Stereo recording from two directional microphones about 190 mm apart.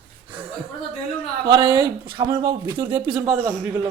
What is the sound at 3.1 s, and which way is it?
Speech, 10° right (ahead or behind).